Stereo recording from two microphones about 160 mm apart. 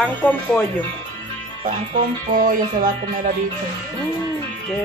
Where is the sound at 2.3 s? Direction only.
60° right (ahead or behind).